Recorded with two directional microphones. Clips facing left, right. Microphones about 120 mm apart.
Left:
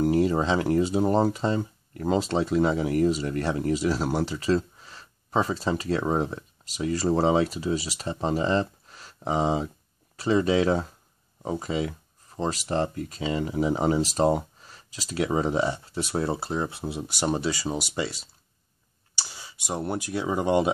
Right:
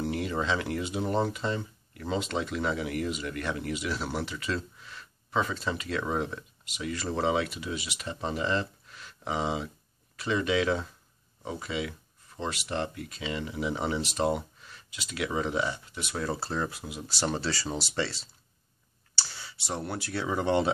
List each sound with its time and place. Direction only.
0.0 s speech: 35° left (ahead or behind)
16.3 s speech: 20° left (ahead or behind)
19.1 s a sound: 15° left (ahead or behind)
19.9 s speech: 15° left (ahead or behind)